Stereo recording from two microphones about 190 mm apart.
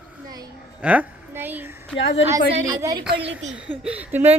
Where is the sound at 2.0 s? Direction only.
70° left (ahead or behind).